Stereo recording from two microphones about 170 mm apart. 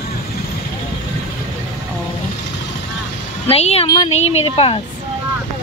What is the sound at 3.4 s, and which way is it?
A woman's voice, 35° left (ahead or behind).